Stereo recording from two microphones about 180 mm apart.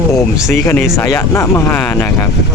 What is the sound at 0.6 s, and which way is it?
Speech, 10° left (ahead or behind).